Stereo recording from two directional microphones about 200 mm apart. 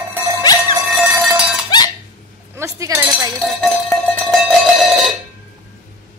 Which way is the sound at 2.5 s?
15° right (ahead or behind).